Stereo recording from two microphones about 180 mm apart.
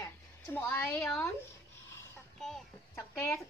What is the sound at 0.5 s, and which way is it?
Speech, 10° left (ahead or behind).